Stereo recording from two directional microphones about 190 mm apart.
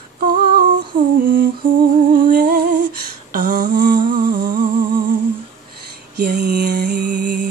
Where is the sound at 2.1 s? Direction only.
45° right (ahead or behind).